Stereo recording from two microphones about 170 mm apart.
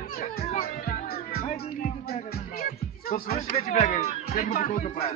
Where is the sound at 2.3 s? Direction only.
65° left (ahead or behind).